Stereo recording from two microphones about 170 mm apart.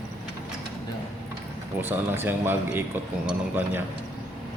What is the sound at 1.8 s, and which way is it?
A man's voice, 10° right (ahead or behind).